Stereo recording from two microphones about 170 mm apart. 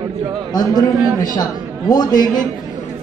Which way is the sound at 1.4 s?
20° left (ahead or behind).